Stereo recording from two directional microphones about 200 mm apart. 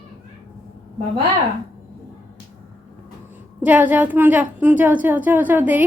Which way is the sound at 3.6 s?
10° right (ahead or behind).